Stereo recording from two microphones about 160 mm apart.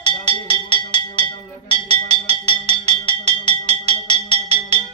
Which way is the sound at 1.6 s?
30° left (ahead or behind).